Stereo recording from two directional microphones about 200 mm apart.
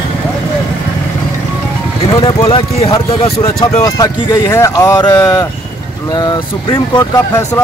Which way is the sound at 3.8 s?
15° left (ahead or behind).